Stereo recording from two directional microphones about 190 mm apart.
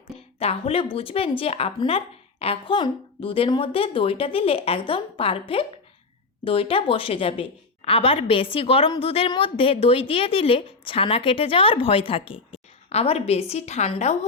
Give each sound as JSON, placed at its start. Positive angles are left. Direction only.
{"t": 0.3, "sound": "a woman's voice", "side_deg": 30}